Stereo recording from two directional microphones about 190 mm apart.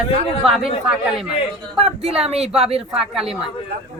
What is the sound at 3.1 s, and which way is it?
Speech, 5° right (ahead or behind).